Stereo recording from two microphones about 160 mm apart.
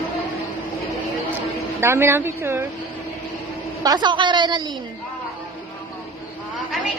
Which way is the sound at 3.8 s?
25° right (ahead or behind).